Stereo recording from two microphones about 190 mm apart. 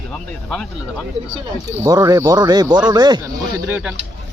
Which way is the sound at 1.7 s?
15° right (ahead or behind).